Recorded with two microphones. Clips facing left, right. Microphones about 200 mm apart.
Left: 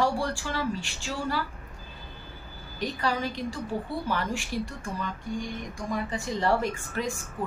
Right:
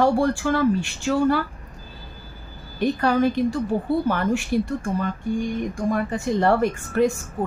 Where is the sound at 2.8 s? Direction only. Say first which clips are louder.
Right 10 dB; 55° right (ahead or behind).